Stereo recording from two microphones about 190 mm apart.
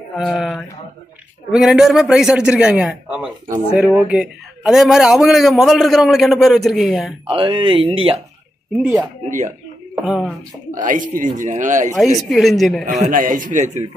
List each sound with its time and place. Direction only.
0.2 s a man's voice: centre (ahead or behind)
7.2 s speech: 25° right (ahead or behind)
8.7 s a man's voice: 5° right (ahead or behind)
10.0 s a man's voice: 5° right (ahead or behind)
10.7 s speech: 45° right (ahead or behind)
12.2 s a man's voice: centre (ahead or behind)
13.0 s speech: 45° right (ahead or behind)